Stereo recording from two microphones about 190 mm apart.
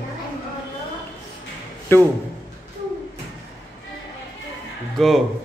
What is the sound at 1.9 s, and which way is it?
Speech, 10° left (ahead or behind).